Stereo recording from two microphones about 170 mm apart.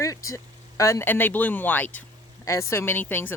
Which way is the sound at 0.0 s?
20° left (ahead or behind).